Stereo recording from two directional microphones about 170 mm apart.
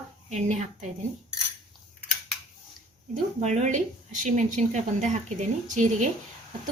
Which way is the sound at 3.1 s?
40° right (ahead or behind).